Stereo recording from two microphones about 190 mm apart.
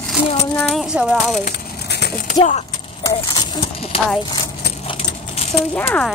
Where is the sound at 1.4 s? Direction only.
60° left (ahead or behind).